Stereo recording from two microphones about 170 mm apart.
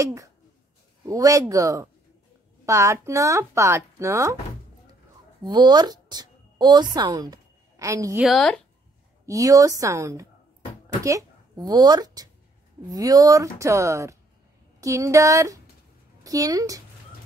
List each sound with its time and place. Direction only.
0.0 s speech: 20° right (ahead or behind)
5.4 s a woman's voice: 25° right (ahead or behind)
8.2 s speech: centre (ahead or behind)
9.2 s speech: 20° right (ahead or behind)